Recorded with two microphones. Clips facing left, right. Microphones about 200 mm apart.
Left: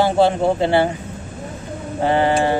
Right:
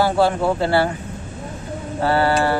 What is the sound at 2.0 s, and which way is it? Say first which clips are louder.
Speech: left 1 dB; 20° left (ahead or behind).